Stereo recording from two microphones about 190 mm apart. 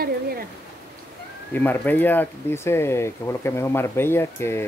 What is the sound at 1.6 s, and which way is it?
Speech, 10° left (ahead or behind).